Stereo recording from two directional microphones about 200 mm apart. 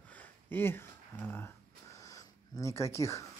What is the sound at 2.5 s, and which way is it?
Speech, 15° left (ahead or behind).